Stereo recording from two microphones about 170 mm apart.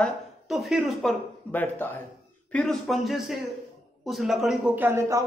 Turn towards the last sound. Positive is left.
turn(degrees=-15)  # may be behind; listen again after turning